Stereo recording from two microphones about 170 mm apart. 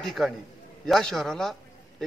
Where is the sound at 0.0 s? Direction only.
Centre (ahead or behind).